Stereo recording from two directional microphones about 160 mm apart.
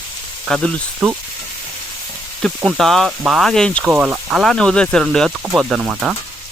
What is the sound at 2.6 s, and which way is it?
Speech, centre (ahead or behind).